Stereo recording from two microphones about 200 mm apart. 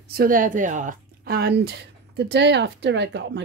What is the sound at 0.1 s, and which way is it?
A woman's voice, 45° right (ahead or behind).